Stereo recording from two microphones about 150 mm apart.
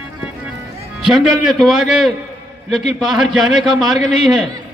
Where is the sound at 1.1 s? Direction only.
Centre (ahead or behind).